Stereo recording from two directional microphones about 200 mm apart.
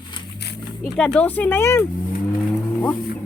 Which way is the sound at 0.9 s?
5° left (ahead or behind).